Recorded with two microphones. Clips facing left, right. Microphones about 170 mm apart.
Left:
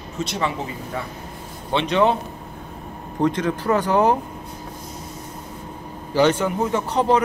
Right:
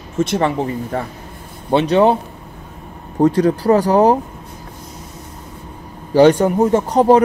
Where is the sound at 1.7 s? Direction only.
40° right (ahead or behind).